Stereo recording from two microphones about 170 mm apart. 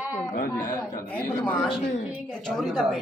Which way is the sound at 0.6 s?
20° left (ahead or behind).